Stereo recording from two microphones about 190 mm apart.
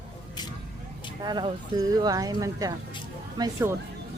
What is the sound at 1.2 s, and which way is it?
Speech, 25° right (ahead or behind).